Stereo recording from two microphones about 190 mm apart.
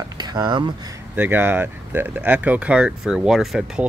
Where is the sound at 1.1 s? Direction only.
10° right (ahead or behind).